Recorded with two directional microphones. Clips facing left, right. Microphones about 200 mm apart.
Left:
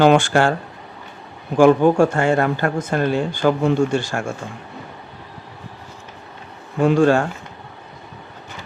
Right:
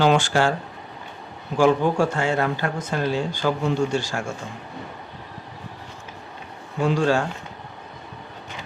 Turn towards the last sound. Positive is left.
turn(degrees=55)  # may be behind; listen again after turning